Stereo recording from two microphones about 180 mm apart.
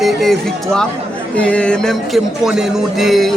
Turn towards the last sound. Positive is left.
turn(degrees=0)  # may be behind; listen again after turning